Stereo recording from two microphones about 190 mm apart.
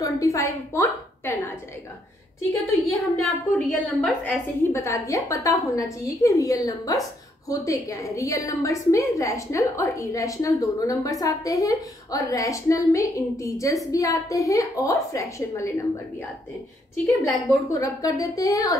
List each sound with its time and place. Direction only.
0.0 s a woman's voice: 15° left (ahead or behind)
2.7 s a woman's voice: centre (ahead or behind); by 15.8 s 15° left (ahead or behind)
17.0 s a woman's voice: 15° left (ahead or behind)